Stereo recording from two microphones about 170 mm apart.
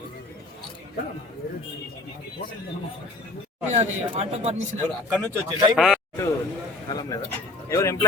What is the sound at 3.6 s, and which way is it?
Speech, 40° right (ahead or behind).